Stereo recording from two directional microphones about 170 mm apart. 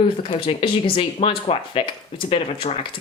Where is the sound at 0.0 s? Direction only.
35° left (ahead or behind).